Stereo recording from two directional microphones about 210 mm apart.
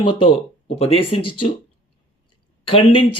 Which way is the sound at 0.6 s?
30° left (ahead or behind).